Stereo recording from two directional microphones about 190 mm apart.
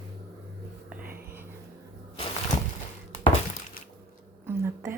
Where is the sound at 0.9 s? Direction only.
10° right (ahead or behind).